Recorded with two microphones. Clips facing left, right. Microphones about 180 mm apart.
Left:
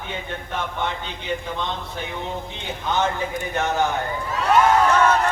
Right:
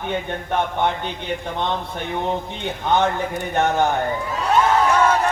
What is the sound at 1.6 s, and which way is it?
A man's voice, 60° right (ahead or behind).